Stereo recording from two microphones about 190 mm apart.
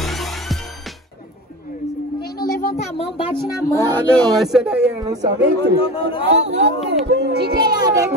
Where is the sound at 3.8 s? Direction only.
5° left (ahead or behind).